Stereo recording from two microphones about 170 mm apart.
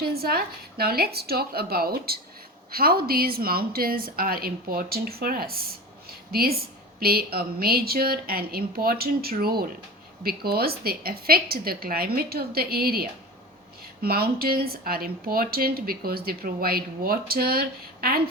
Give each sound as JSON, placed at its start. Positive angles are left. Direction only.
{"t": 0.0, "sound": "a woman's voice", "side_deg": -65}